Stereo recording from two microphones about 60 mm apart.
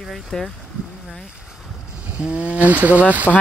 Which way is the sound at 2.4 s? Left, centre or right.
Right.